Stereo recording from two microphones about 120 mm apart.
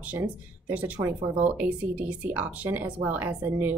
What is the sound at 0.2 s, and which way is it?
Speech, 15° right (ahead or behind).